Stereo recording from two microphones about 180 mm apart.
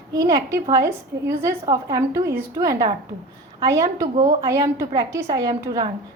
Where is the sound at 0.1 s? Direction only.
20° right (ahead or behind).